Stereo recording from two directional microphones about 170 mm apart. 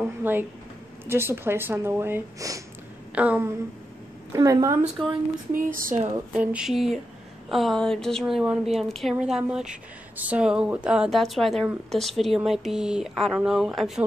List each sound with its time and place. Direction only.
0.0 s speech: 10° right (ahead or behind)
4.3 s a woman's voice: 20° right (ahead or behind)
5.5 s speech: 55° right (ahead or behind)
6.3 s a woman's voice: 5° right (ahead or behind)